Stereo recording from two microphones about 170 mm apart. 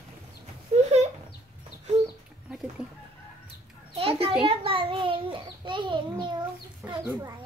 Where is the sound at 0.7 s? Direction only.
40° right (ahead or behind).